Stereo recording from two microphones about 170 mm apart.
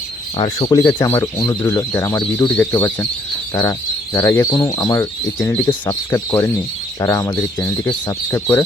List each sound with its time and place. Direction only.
0.3 s speech: 25° left (ahead or behind)